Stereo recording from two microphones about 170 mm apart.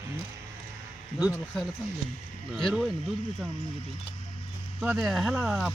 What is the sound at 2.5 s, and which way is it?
Speech, centre (ahead or behind).